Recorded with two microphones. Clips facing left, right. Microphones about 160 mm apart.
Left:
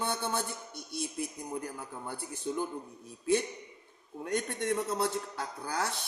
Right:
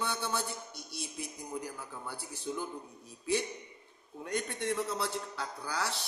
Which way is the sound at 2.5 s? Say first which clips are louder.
Left 3 dB; 45° left (ahead or behind).